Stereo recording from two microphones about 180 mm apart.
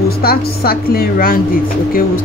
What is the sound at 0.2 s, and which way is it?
Speech, 60° left (ahead or behind).